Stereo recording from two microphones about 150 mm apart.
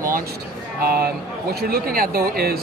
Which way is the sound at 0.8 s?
90° right.